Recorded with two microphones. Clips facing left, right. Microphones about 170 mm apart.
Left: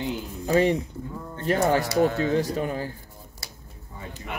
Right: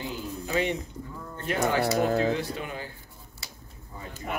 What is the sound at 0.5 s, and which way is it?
Speech, 40° left (ahead or behind).